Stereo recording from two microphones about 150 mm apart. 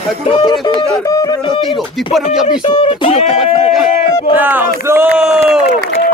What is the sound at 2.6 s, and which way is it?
Speech, 40° left (ahead or behind).